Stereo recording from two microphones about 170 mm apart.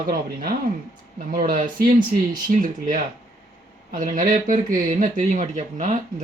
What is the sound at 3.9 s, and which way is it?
Speech, 55° right (ahead or behind).